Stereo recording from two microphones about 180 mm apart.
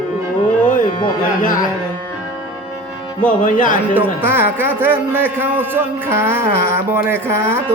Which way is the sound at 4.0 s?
15° right (ahead or behind).